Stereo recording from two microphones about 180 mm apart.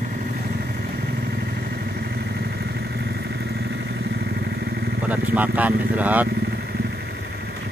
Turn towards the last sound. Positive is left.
turn(degrees=-10)  # may be behind; listen again after turning